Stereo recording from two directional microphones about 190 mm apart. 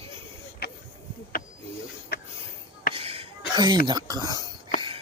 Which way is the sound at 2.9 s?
30° right (ahead or behind).